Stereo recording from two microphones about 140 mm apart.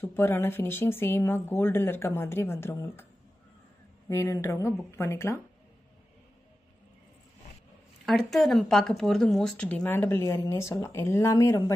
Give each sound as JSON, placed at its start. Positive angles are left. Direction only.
{"t": 0.0, "sound": "speech", "side_deg": 15}
{"t": 4.1, "sound": "speech", "side_deg": 20}
{"t": 8.0, "sound": "speech", "side_deg": 0}